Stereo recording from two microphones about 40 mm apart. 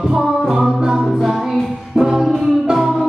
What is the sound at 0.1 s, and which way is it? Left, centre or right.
Music, centre.